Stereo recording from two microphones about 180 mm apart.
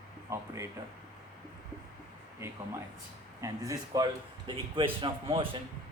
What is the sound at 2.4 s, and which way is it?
A man's voice, 15° right (ahead or behind).